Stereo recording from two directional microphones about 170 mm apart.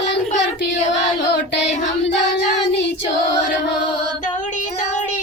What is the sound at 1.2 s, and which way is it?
Child singing, 90° left.